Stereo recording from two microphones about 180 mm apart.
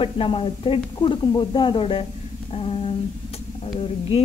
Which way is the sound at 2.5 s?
30° left (ahead or behind).